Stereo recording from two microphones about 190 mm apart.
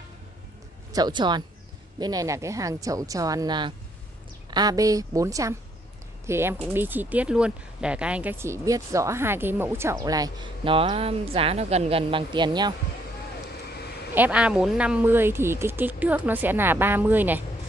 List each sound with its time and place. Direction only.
0.9 s speech: 20° right (ahead or behind)
14.1 s speech: 10° right (ahead or behind)